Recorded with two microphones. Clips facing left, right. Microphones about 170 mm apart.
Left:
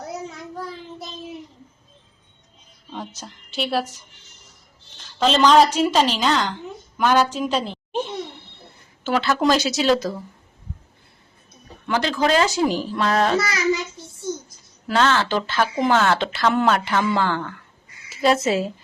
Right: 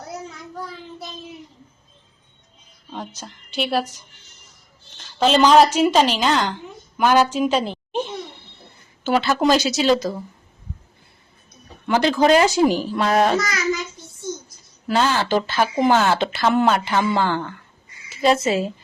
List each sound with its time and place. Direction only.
2.9 s a woman's voice: centre (ahead or behind)
5.2 s a woman's voice: 5° right (ahead or behind)
9.4 s a woman's voice: centre (ahead or behind)
11.9 s speech: 20° right (ahead or behind)
12.6 s speech: 5° right (ahead or behind)
13.4 s a child's voice: 30° left (ahead or behind)
14.8 s a woman's voice: 10° right (ahead or behind)